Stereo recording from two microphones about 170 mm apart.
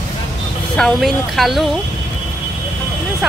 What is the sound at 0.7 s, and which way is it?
Speech, centre (ahead or behind).